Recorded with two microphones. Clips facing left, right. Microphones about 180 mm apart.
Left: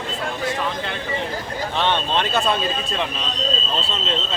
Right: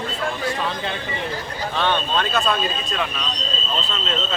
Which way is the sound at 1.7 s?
25° left (ahead or behind).